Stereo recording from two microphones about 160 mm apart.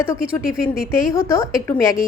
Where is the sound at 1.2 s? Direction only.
20° left (ahead or behind).